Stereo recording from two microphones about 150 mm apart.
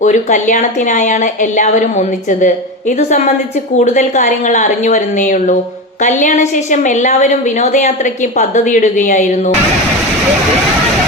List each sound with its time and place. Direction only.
0.0 s a woman's voice: 55° left (ahead or behind)
3.8 s a woman's voice: 50° left (ahead or behind)